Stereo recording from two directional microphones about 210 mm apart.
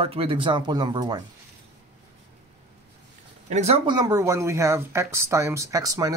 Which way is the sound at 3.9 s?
20° right (ahead or behind).